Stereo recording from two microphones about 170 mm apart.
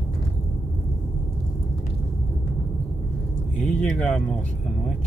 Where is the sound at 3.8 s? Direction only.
5° left (ahead or behind).